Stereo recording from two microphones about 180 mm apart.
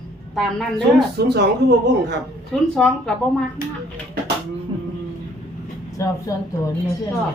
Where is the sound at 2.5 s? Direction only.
5° left (ahead or behind).